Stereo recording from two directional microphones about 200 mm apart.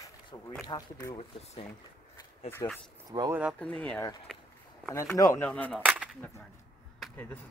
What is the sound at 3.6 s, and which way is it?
Speech, 5° left (ahead or behind).